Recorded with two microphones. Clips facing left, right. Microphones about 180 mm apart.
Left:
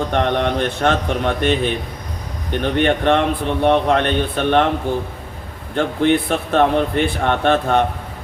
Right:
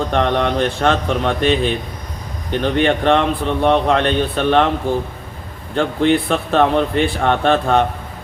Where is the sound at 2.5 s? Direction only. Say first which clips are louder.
Right 1 dB; 55° left (ahead or behind).